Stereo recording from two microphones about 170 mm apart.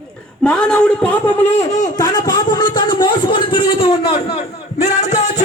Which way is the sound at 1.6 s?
45° left (ahead or behind).